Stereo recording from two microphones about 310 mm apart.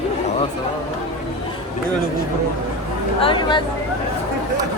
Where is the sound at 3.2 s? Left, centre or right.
Centre.